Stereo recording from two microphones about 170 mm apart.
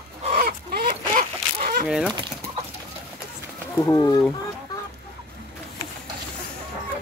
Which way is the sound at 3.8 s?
20° left (ahead or behind).